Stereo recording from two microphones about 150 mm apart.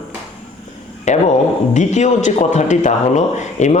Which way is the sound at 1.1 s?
50° left (ahead or behind).